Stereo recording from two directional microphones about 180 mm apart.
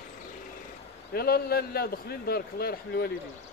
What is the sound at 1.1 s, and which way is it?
A man's voice, 60° left (ahead or behind).